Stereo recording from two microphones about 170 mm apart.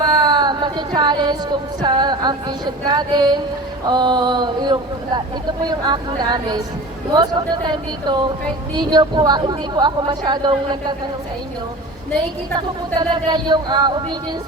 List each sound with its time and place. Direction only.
0.0 s speech: 25° right (ahead or behind)
12.5 s speech: 25° right (ahead or behind)